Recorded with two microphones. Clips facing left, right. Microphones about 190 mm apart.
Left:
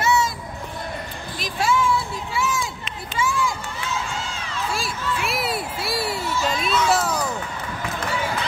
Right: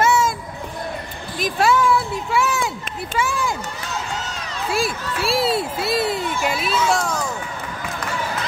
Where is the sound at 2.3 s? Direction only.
65° right (ahead or behind).